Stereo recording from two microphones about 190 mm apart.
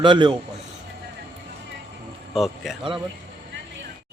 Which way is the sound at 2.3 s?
Centre (ahead or behind).